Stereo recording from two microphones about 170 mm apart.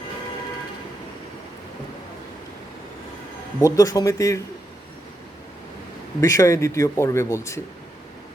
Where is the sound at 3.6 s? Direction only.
20° left (ahead or behind).